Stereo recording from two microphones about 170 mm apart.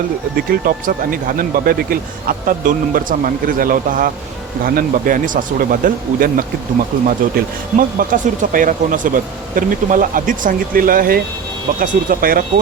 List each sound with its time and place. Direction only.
0.3 s speech: 55° right (ahead or behind)